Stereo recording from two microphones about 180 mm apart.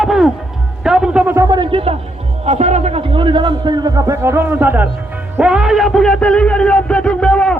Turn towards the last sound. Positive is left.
turn(degrees=5)  # may be behind; listen again after turning